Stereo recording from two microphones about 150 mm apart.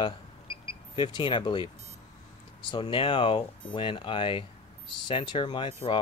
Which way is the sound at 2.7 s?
35° left (ahead or behind).